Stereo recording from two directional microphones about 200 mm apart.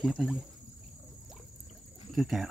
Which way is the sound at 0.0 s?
Centre (ahead or behind).